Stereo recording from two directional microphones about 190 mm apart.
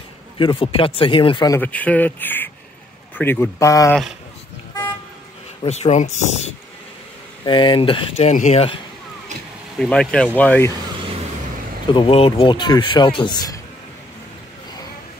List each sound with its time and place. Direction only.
0.4 s speech: 25° left (ahead or behind)
1.6 s speech: 10° left (ahead or behind)
5.6 s speech: 35° left (ahead or behind)
7.4 s speech: 25° left (ahead or behind)
9.8 s speech: 5° left (ahead or behind)
11.9 s speech: 25° left (ahead or behind)